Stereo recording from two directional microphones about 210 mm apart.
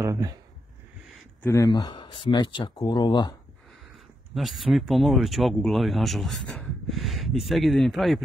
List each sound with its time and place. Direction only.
0.0 s a sound: 15° right (ahead or behind)
1.4 s speech: 15° left (ahead or behind)
4.3 s speech: centre (ahead or behind)